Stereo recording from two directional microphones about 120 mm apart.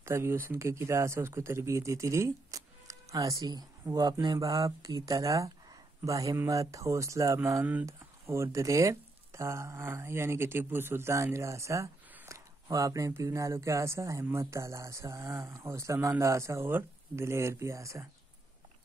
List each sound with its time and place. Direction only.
0.0 s speech: 20° right (ahead or behind)